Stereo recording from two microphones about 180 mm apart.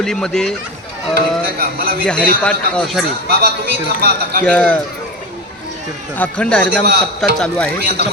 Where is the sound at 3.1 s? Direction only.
60° right (ahead or behind).